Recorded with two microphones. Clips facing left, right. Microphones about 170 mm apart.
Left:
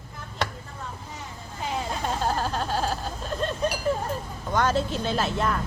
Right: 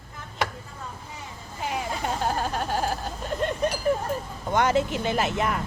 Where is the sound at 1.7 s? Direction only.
10° right (ahead or behind).